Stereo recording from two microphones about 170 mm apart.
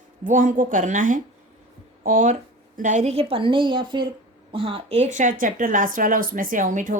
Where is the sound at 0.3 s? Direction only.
50° right (ahead or behind).